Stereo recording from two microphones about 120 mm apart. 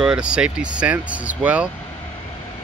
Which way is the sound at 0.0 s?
5° right (ahead or behind).